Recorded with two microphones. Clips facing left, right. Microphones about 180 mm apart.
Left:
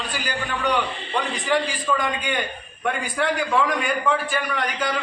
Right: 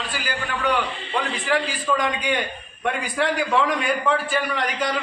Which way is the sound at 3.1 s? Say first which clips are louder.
Right 1 dB; centre (ahead or behind).